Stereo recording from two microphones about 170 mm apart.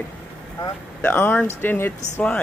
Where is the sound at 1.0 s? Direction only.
10° left (ahead or behind).